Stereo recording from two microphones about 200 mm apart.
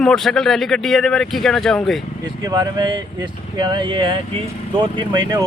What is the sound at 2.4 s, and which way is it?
Speech, 20° right (ahead or behind).